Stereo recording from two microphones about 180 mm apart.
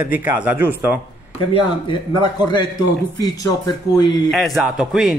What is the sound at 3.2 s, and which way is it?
Speech, 20° left (ahead or behind).